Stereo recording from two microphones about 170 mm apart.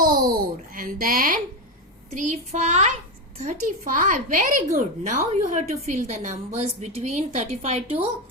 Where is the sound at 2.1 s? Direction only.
45° right (ahead or behind).